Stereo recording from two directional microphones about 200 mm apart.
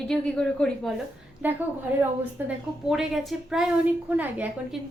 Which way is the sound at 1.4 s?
10° right (ahead or behind).